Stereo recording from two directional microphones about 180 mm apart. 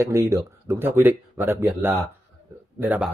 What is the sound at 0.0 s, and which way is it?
Speech, 15° right (ahead or behind).